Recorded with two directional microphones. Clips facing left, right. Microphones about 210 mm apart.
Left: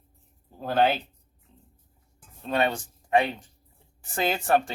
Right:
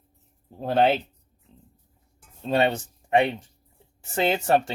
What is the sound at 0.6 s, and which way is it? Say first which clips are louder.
Speech: right 2 dB; 25° right (ahead or behind).